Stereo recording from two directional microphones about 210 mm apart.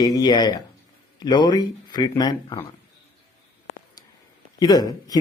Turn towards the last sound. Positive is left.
turn(degrees=15)  # may be behind; listen again after turning